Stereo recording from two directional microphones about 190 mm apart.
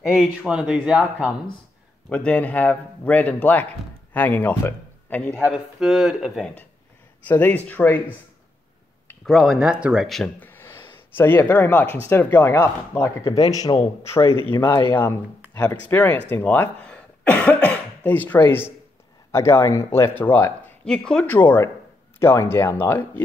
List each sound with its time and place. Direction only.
0.2 s speech: 5° right (ahead or behind)
2.0 s a man's voice: 5° left (ahead or behind)
9.2 s a man's voice: centre (ahead or behind)